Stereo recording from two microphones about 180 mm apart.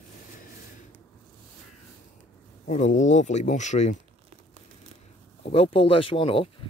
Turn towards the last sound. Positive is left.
turn(degrees=30)  # may be behind; listen again after turning